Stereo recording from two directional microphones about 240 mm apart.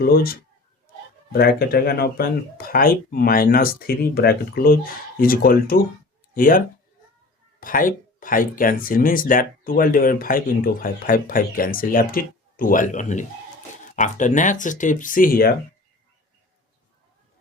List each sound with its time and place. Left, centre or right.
0.0 s speech: left
7.6 s speech: left